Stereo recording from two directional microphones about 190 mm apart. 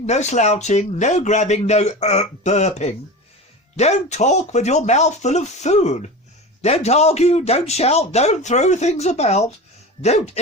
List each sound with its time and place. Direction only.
0.0 s a man's voice: 35° left (ahead or behind)